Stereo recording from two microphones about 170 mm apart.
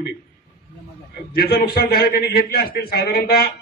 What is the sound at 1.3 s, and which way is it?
A man's voice, 65° left (ahead or behind).